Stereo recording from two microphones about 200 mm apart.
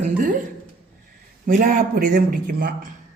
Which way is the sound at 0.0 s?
40° right (ahead or behind).